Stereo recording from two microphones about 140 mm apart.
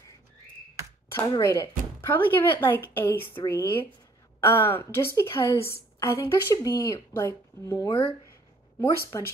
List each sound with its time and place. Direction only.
1.1 s a woman's voice: 25° left (ahead or behind)